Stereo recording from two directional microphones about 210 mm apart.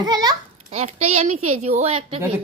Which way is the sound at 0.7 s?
30° right (ahead or behind).